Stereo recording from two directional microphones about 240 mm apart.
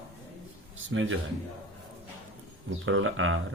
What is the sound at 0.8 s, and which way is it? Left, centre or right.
Speech, right.